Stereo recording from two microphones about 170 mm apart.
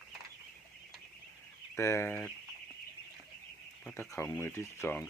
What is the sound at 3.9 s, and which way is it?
Speech, 15° left (ahead or behind).